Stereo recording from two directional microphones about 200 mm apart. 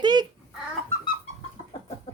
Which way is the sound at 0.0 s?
20° right (ahead or behind).